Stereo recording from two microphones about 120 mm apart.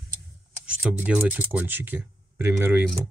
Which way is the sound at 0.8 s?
10° right (ahead or behind).